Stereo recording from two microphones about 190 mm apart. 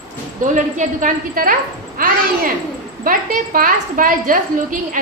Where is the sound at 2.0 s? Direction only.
50° right (ahead or behind).